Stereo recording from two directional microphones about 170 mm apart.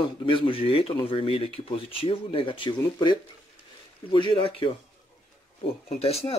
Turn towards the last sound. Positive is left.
turn(degrees=35)  # may be behind; listen again after turning